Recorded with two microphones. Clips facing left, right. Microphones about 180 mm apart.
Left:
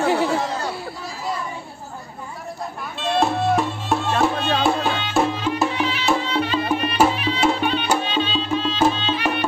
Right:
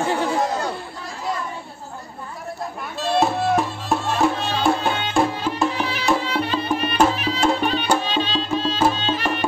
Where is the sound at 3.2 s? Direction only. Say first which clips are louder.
Left 1 dB; centre (ahead or behind).